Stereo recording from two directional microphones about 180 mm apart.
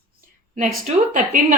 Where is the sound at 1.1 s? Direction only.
45° right (ahead or behind).